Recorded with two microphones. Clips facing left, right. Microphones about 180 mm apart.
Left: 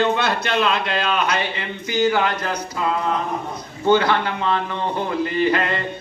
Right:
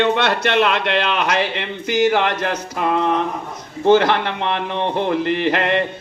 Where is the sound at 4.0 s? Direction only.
85° right.